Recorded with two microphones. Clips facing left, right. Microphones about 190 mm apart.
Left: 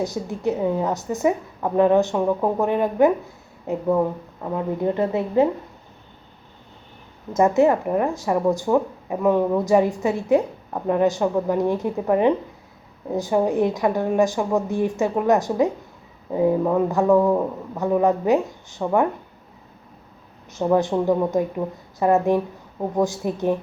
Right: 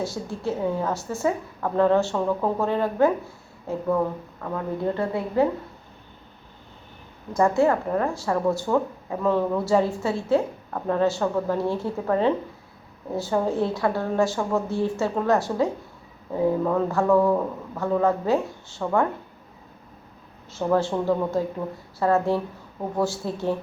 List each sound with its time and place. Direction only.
0.0 s a woman's voice: 20° left (ahead or behind)
7.3 s speech: 20° left (ahead or behind)
20.5 s speech: 15° left (ahead or behind)